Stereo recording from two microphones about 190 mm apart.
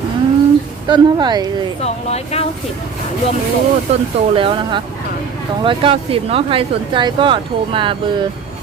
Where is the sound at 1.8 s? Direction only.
35° left (ahead or behind).